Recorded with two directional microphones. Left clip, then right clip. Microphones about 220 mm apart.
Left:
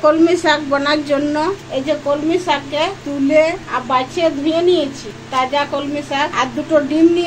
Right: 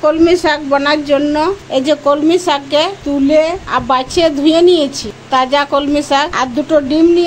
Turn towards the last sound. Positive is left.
turn(degrees=-25)  # may be behind; listen again after turning